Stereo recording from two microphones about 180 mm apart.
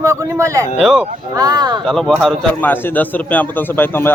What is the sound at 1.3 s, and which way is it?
Speech, 20° right (ahead or behind).